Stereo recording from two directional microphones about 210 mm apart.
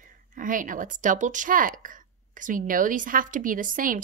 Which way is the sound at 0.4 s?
40° right (ahead or behind).